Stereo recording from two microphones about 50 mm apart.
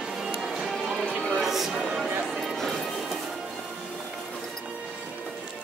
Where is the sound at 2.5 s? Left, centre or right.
Centre.